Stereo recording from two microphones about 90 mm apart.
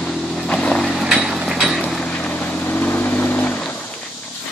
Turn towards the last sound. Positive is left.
turn(degrees=15)  # may be behind; listen again after turning